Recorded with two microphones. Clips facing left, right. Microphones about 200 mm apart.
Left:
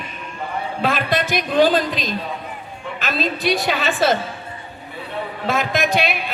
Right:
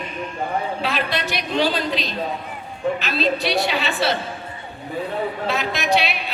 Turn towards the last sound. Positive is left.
turn(degrees=50)  # may be behind; listen again after turning